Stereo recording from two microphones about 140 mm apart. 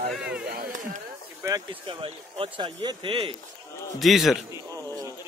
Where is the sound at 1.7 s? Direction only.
40° right (ahead or behind).